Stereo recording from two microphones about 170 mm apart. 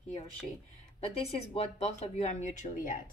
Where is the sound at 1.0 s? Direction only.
35° left (ahead or behind).